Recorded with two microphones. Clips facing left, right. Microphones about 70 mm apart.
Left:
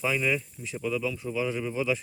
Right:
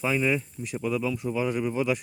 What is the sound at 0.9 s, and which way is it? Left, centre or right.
Speech, right.